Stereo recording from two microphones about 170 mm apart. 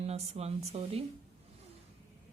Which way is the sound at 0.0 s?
40° right (ahead or behind).